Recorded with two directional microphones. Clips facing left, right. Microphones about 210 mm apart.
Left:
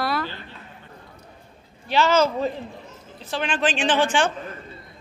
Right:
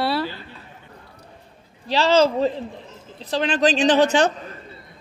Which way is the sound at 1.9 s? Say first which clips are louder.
Right 2 dB; 35° right (ahead or behind).